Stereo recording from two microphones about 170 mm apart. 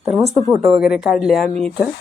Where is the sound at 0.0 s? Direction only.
15° right (ahead or behind).